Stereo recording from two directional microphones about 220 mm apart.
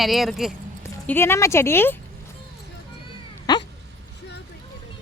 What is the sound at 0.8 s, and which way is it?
Speech, 10° left (ahead or behind).